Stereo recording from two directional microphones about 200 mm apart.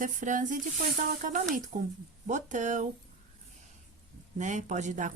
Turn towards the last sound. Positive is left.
turn(degrees=-40)  # may be behind; listen again after turning